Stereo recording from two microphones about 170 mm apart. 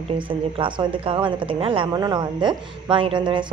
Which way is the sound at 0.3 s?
30° right (ahead or behind).